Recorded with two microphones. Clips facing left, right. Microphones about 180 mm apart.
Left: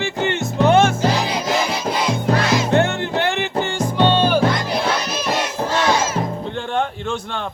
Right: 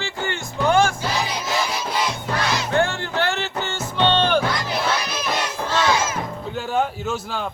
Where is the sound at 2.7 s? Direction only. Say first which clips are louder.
Left 4 dB; 20° left (ahead or behind).